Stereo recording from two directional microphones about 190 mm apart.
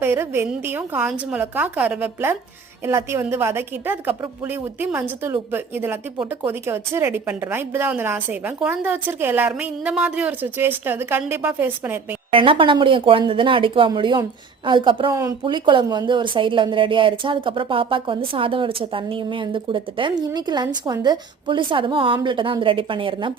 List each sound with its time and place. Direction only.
0.0 s a woman's voice: 10° right (ahead or behind)
12.3 s speech: 25° right (ahead or behind)